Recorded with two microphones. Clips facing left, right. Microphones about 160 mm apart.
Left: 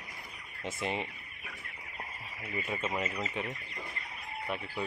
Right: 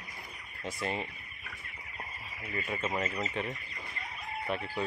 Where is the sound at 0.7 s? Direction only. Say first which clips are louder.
Even; 25° left (ahead or behind).